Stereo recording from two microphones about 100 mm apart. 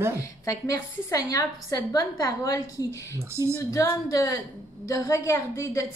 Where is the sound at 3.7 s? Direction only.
35° left (ahead or behind).